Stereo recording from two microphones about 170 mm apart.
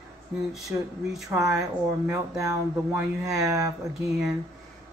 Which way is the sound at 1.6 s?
20° right (ahead or behind).